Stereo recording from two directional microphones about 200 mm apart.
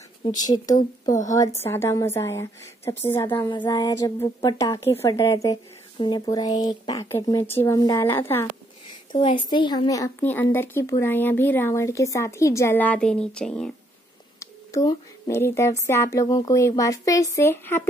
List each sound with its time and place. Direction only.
0.4 s music: 20° left (ahead or behind)
0.7 s speech: 40° left (ahead or behind)
1.3 s speech: 15° left (ahead or behind)
3.3 s music: 20° left (ahead or behind)
4.4 s speech: 20° left (ahead or behind)
9.1 s speech: 25° left (ahead or behind); by 13.7 s 5° left (ahead or behind)
14.4 s speech: 15° left (ahead or behind)